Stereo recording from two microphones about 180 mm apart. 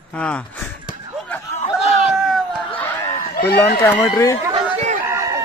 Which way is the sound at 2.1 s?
Centre (ahead or behind).